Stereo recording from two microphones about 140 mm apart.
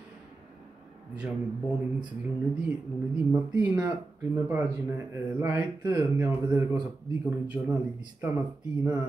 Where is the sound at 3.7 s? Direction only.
15° right (ahead or behind).